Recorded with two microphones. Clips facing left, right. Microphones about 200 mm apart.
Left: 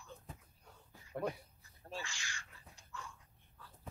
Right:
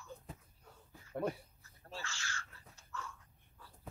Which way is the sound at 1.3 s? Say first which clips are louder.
Right 1 dB; 15° left (ahead or behind).